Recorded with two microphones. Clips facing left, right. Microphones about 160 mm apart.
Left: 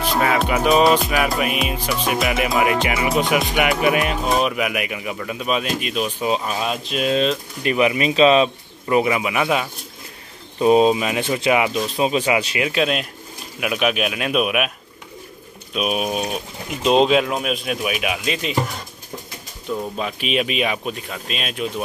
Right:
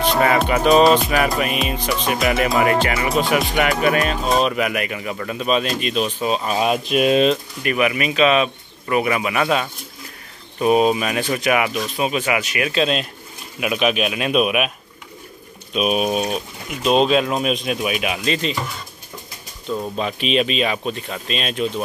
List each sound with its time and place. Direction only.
0.2 s music: centre (ahead or behind)
2.3 s speech: 10° left (ahead or behind)
6.5 s speech: 10° right (ahead or behind)
7.6 s speech: 25° left (ahead or behind)
8.8 s speech: 20° left (ahead or behind)
10.6 s speech: 25° left (ahead or behind)
13.6 s music: centre (ahead or behind)
15.7 s music: centre (ahead or behind)
16.8 s speech: 20° left (ahead or behind)
19.7 s speech: 5° left (ahead or behind)